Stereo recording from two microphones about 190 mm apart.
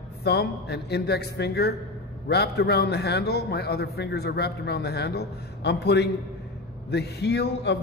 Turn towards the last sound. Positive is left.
turn(degrees=60)  # may be behind; listen again after turning